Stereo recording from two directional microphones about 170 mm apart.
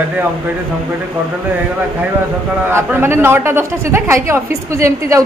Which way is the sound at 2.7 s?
15° right (ahead or behind).